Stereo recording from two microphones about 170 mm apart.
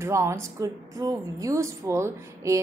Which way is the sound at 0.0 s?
15° right (ahead or behind).